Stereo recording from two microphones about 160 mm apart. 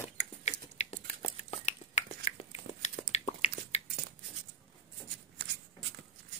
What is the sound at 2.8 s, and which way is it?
Chewing, 40° left (ahead or behind).